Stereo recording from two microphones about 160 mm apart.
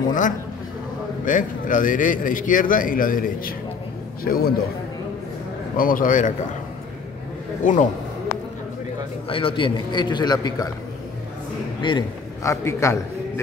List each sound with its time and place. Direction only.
1.2 s a man's voice: 55° left (ahead or behind)
5.8 s a man's voice: 60° left (ahead or behind)
7.6 s a man's voice: 55° left (ahead or behind)
9.3 s a man's voice: 35° left (ahead or behind)
11.8 s a man's voice: 30° left (ahead or behind)
12.4 s a man's voice: 20° left (ahead or behind)